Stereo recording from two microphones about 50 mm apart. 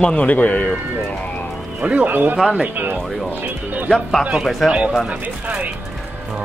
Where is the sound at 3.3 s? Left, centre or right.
Right.